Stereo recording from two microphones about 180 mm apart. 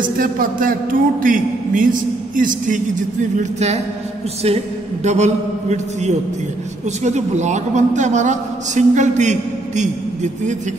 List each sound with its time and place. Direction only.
0.0 s a man's voice: 50° right (ahead or behind)
5.0 s a man's voice: 40° right (ahead or behind)